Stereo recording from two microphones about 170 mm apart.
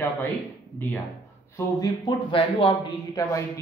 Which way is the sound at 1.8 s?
25° left (ahead or behind).